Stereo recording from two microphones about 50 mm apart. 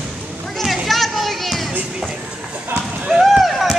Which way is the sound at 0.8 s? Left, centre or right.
Centre.